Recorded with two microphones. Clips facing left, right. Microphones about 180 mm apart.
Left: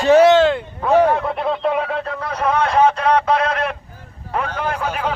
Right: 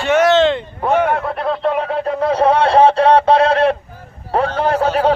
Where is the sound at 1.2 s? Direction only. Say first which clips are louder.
Right 1 dB; centre (ahead or behind).